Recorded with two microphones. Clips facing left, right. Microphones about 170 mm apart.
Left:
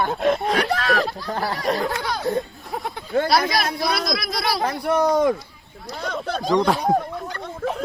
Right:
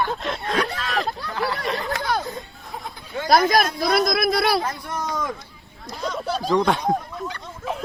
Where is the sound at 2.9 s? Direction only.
60° left (ahead or behind).